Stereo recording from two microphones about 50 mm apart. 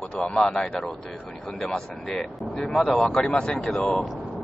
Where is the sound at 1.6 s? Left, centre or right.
Centre.